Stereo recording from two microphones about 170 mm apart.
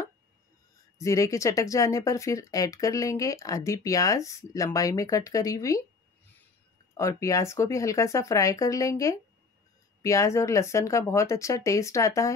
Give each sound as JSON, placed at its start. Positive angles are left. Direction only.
{"t": 0.9, "sound": "speech", "side_deg": 20}
{"t": 7.0, "sound": "speech", "side_deg": 20}